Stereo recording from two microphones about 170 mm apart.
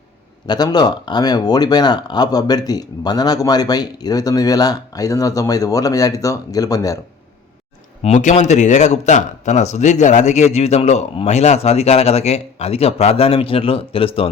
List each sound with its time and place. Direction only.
0.4 s speech: 25° left (ahead or behind)
8.0 s speech: 45° left (ahead or behind)